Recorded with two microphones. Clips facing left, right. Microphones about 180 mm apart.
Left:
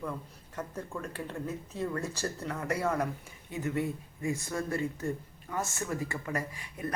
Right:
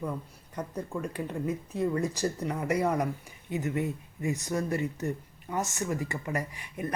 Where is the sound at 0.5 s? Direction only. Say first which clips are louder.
Right 4 dB; 15° right (ahead or behind).